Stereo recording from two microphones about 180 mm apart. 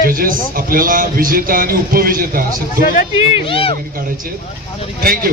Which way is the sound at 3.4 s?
30° left (ahead or behind).